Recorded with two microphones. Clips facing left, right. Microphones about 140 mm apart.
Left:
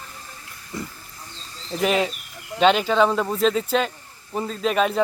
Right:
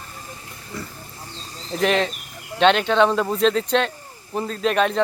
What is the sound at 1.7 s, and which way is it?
Speech, 5° left (ahead or behind).